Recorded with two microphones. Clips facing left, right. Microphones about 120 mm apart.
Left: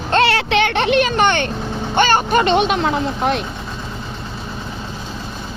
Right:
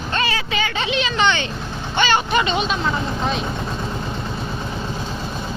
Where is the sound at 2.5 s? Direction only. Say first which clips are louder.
Left 5 dB; 65° left (ahead or behind).